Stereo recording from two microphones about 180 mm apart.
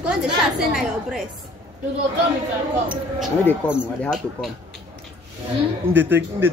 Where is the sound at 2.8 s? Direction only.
Centre (ahead or behind).